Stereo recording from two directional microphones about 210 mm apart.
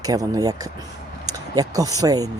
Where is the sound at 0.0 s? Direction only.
15° right (ahead or behind).